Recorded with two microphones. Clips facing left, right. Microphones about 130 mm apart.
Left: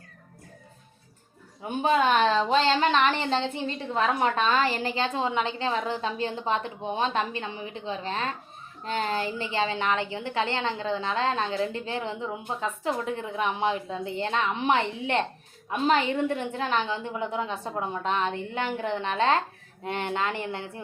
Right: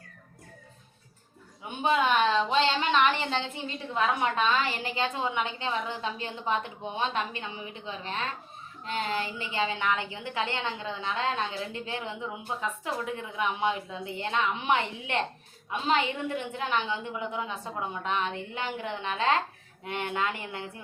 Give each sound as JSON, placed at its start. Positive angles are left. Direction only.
{"t": 1.6, "sound": "a woman's voice", "side_deg": 40}